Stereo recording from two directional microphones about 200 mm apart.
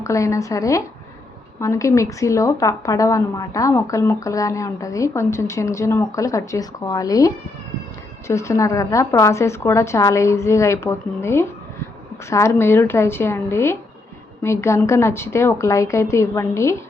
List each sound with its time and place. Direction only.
0.0 s a woman's voice: 15° left (ahead or behind)